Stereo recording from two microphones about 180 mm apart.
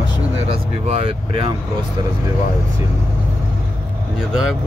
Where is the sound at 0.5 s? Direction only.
30° right (ahead or behind).